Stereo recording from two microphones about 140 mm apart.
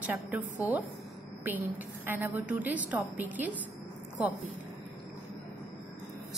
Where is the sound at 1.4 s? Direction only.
15° right (ahead or behind).